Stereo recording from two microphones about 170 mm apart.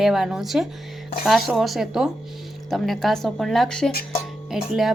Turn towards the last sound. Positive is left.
turn(degrees=0)  # may be behind; listen again after turning